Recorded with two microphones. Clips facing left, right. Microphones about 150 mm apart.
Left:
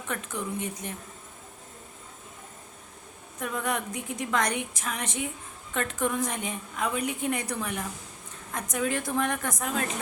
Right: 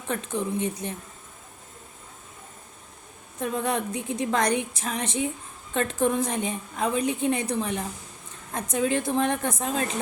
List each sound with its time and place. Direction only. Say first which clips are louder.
0.1 s a woman's voice: right 5 dB; 30° right (ahead or behind)
3.4 s a woman's voice: right 4 dB; 30° right (ahead or behind)